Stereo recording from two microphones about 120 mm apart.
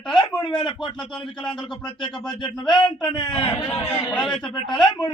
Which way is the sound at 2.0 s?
35° left (ahead or behind).